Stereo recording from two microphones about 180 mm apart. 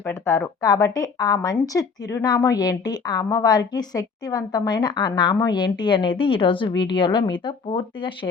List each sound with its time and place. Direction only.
0.0 s speech: 15° left (ahead or behind)